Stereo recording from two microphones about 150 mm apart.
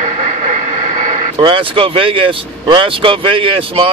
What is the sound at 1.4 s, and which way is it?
Speech, 35° right (ahead or behind).